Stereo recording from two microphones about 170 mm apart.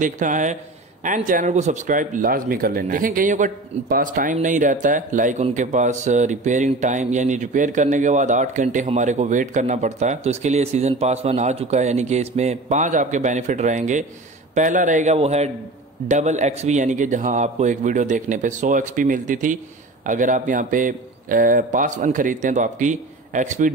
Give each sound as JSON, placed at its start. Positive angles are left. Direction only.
{"t": 0.0, "sound": "speech", "side_deg": -50}